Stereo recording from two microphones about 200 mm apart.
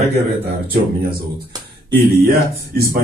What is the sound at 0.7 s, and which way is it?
Speech, 50° right (ahead or behind).